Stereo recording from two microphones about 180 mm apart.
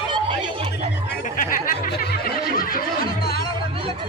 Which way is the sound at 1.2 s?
50° left (ahead or behind).